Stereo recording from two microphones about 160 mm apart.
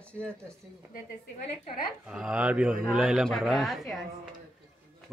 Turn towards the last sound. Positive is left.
turn(degrees=0)  # may be behind; listen again after turning